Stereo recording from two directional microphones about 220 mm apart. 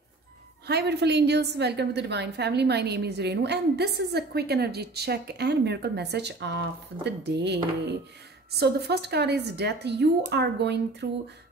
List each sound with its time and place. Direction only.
0.7 s a woman's voice: 50° right (ahead or behind)